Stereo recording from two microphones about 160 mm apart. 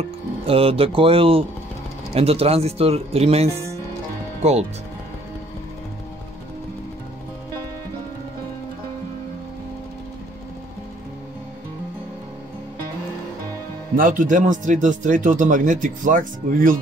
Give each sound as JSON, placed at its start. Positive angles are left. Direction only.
{"t": 0.5, "sound": "speech", "side_deg": -35}
{"t": 13.9, "sound": "speech", "side_deg": -55}